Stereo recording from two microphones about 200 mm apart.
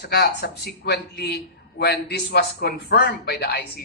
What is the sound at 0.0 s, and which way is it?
A man's voice, 55° left (ahead or behind).